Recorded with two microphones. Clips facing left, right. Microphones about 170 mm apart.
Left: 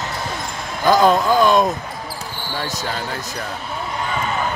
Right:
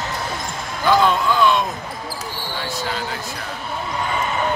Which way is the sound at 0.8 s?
40° left (ahead or behind).